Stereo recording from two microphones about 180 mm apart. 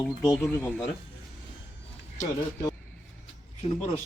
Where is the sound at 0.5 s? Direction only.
10° left (ahead or behind).